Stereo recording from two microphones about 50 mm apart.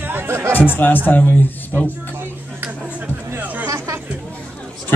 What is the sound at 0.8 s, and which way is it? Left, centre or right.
A man's voice, left.